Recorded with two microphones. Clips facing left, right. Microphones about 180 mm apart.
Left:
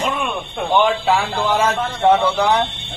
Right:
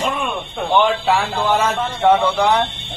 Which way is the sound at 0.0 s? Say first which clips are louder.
Even; centre (ahead or behind).